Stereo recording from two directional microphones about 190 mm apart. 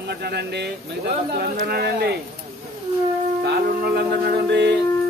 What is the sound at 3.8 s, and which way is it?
Speech, 60° right (ahead or behind).